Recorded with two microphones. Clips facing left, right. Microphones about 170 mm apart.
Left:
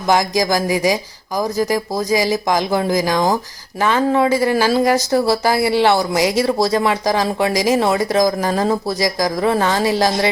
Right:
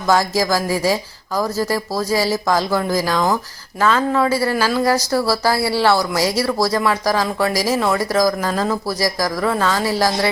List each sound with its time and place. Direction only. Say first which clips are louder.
0.1 s speech: left 1 dB; 15° left (ahead or behind)